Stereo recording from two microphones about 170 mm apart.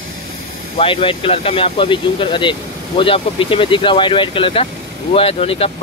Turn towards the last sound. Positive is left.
turn(degrees=35)  # may be behind; listen again after turning